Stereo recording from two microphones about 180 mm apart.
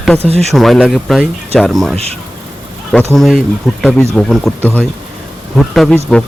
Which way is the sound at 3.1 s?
Centre (ahead or behind).